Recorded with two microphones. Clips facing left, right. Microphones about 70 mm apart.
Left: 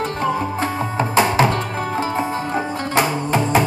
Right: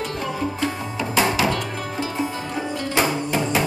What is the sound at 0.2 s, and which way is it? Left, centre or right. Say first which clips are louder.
Music: left 4 dB; left.